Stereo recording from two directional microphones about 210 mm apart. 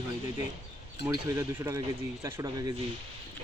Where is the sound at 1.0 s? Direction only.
15° right (ahead or behind).